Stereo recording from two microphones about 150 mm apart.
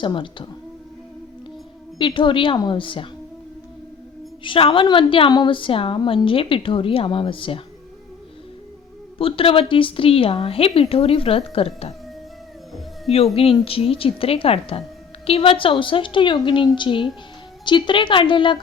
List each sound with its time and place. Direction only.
0.0 s a woman's voice: 35° left (ahead or behind)
2.0 s a woman's voice: 35° left (ahead or behind)
4.4 s a woman's voice: 35° left (ahead or behind)
9.1 s a woman's voice: 35° left (ahead or behind)
13.1 s a woman's voice: 40° left (ahead or behind)